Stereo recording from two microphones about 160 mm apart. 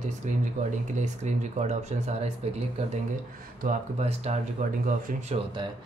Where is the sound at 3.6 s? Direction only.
45° right (ahead or behind).